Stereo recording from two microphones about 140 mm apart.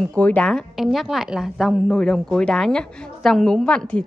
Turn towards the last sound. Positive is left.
turn(degrees=5)  # may be behind; listen again after turning